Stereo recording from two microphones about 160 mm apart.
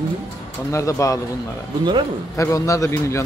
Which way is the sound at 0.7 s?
20° left (ahead or behind).